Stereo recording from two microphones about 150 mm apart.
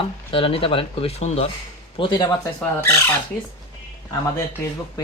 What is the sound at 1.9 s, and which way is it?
Speech, 30° left (ahead or behind).